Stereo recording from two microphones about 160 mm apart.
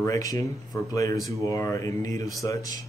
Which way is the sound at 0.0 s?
20° left (ahead or behind).